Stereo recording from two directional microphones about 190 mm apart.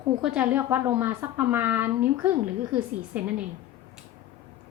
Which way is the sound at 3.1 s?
10° right (ahead or behind).